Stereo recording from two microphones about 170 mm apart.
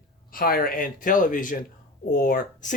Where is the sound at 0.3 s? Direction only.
60° left (ahead or behind).